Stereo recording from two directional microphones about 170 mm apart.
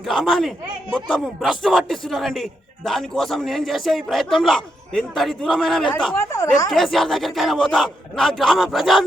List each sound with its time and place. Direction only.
0.0 s a man's voice: centre (ahead or behind)
6.1 s speech: 15° left (ahead or behind)
6.7 s a man's voice: centre (ahead or behind)